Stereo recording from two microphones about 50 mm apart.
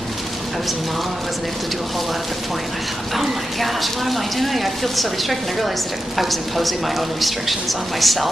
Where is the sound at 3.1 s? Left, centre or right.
Centre.